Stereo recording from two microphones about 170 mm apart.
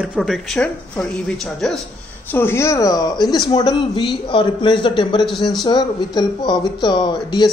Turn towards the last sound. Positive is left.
turn(degrees=25)  # may be behind; listen again after turning